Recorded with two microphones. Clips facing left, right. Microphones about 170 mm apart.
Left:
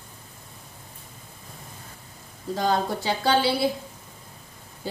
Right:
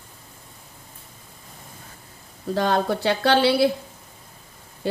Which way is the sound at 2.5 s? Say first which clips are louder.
Right 3 dB; 65° right (ahead or behind).